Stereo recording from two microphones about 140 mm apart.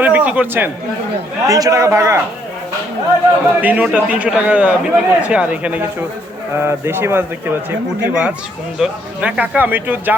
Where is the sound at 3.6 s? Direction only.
10° right (ahead or behind).